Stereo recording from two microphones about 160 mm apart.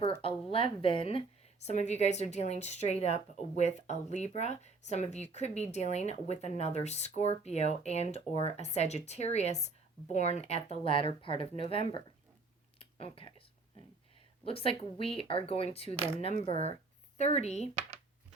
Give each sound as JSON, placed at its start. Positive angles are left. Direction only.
{"t": 0.0, "sound": "a woman's voice", "side_deg": 35}
{"t": 1.6, "sound": "speech", "side_deg": 45}
{"t": 12.8, "sound": "a sound", "side_deg": 35}
{"t": 14.4, "sound": "speech", "side_deg": 35}